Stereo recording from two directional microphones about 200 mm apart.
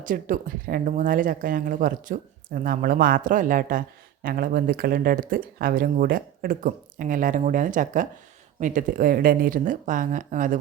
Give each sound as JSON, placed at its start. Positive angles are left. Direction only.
{"t": 0.0, "sound": "speech", "side_deg": -40}